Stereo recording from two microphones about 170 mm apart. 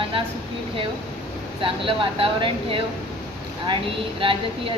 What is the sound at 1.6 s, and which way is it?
Speech, 30° right (ahead or behind).